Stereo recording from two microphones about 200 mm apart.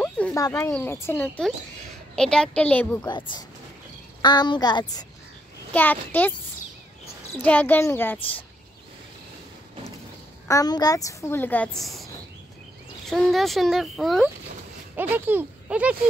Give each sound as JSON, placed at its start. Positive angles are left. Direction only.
{"t": 0.3, "sound": "a woman's voice", "side_deg": 15}
{"t": 3.1, "sound": "a woman's voice", "side_deg": 25}
{"t": 5.7, "sound": "a woman's voice", "side_deg": 10}
{"t": 7.4, "sound": "a woman's voice", "side_deg": 10}
{"t": 10.5, "sound": "a woman's voice", "side_deg": 20}